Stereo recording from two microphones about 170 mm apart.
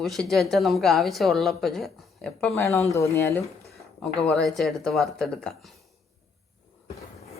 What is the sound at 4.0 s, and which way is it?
A man's voice, 5° left (ahead or behind).